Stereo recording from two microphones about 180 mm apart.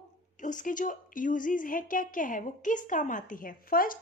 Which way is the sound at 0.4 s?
45° left (ahead or behind).